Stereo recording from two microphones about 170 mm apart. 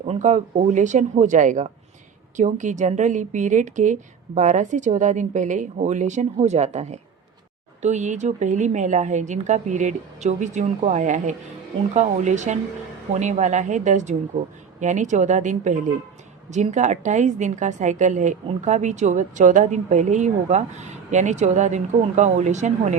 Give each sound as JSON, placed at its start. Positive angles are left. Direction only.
{"t": 0.0, "sound": "a woman's voice", "side_deg": -40}